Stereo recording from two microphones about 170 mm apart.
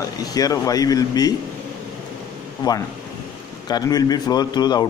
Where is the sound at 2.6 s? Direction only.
25° left (ahead or behind).